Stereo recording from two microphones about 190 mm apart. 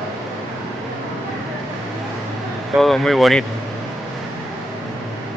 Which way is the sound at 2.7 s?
Centre (ahead or behind).